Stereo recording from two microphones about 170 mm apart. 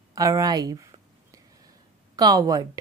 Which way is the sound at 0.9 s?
20° right (ahead or behind).